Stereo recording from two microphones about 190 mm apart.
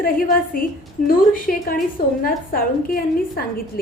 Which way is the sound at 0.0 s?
50° left (ahead or behind).